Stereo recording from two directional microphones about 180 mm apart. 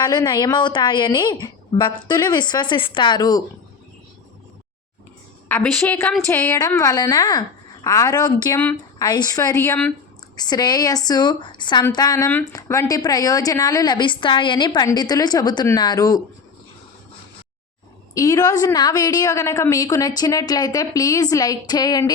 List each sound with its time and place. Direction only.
0.0 s a woman's voice: 25° left (ahead or behind)
5.5 s a woman's voice: 10° left (ahead or behind)
8.5 s speech: 10° left (ahead or behind)
9.0 s a woman's voice: 20° left (ahead or behind)
10.3 s a woman's voice: 25° left (ahead or behind)
18.1 s a woman's voice: 20° left (ahead or behind)